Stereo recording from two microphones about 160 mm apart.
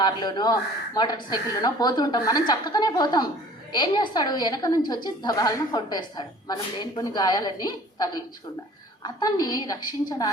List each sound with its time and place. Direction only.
0.0 s a woman's voice: 25° left (ahead or behind)